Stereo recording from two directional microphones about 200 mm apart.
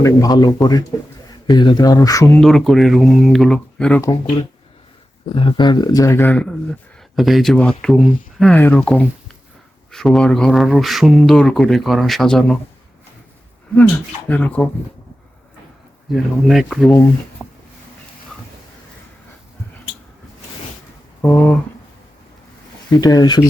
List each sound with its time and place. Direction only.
0.0 s speech: 20° left (ahead or behind)
2.4 s speech: centre (ahead or behind)
5.3 s speech: 25° left (ahead or behind); by 12.5 s centre (ahead or behind)
14.3 s speech: 10° left (ahead or behind)
16.1 s speech: centre (ahead or behind)
17.4 s a sound: centre (ahead or behind)
21.2 s speech: 5° left (ahead or behind)
23.0 s speech: 20° left (ahead or behind)